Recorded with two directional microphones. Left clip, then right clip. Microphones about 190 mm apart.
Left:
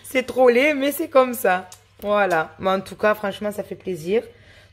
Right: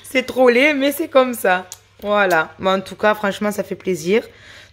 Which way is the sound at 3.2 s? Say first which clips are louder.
Right 5 dB; 20° right (ahead or behind).